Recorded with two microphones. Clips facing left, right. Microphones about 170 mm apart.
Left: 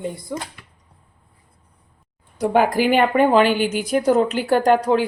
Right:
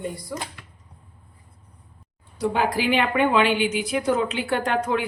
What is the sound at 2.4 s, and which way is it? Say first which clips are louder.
A woman's voice: left 5 dB; 50° left (ahead or behind).